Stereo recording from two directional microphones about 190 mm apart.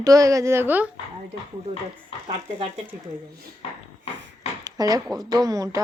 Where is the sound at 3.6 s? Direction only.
30° left (ahead or behind).